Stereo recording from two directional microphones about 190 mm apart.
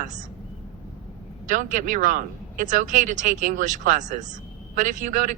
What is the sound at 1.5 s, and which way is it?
Speech, 40° right (ahead or behind).